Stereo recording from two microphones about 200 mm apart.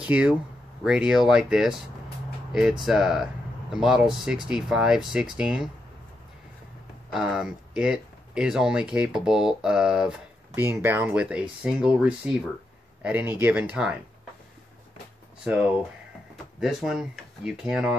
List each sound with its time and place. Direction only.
0.0 s speech: 5° right (ahead or behind)
2.8 s speech: centre (ahead or behind)
7.1 s speech: 5° right (ahead or behind)
15.4 s speech: 5° right (ahead or behind)